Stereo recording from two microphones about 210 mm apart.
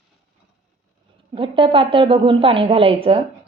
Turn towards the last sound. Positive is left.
turn(degrees=-25)  # may be behind; listen again after turning